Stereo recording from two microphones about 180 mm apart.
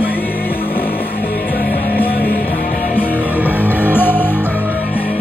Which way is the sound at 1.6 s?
55° left (ahead or behind).